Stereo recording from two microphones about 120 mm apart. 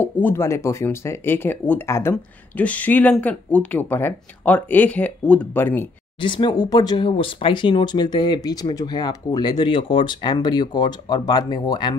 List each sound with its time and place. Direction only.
0.0 s speech: 20° left (ahead or behind)
6.2 s speech: 40° left (ahead or behind)